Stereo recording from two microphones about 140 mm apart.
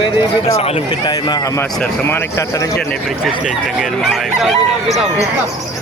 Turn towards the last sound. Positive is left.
turn(degrees=0)  # may be behind; listen again after turning